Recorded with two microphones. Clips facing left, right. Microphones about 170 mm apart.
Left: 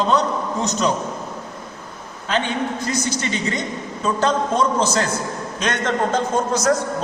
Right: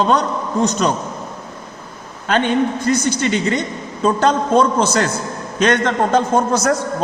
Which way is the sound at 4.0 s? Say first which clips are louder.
Right 4 dB; 65° right (ahead or behind).